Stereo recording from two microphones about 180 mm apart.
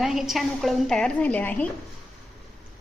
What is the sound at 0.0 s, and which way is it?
A woman's voice, centre (ahead or behind).